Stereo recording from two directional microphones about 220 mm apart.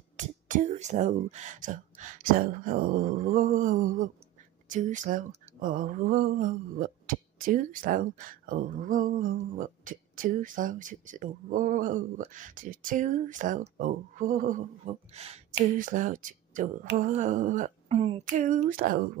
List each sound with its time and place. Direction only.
0.2 s a woman's voice: 35° right (ahead or behind)